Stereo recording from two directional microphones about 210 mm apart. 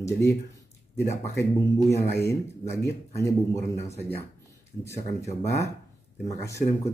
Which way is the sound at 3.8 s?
30° left (ahead or behind).